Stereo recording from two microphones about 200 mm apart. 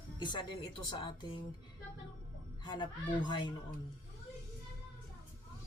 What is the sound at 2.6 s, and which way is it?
Speech, 25° left (ahead or behind).